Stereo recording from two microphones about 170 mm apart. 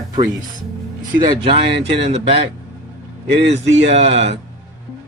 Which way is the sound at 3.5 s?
40° right (ahead or behind).